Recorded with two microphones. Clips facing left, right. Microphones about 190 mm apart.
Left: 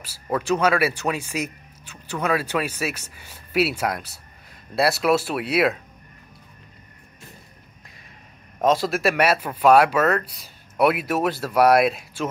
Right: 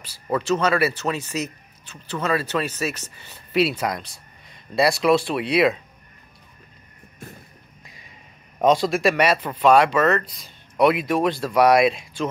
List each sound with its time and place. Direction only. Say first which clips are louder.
0.0 s speech: right 1 dB; 10° left (ahead or behind)
8.5 s speech: right 2 dB; 5° left (ahead or behind)